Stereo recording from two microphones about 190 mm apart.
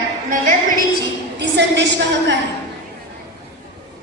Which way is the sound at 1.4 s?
65° right (ahead or behind).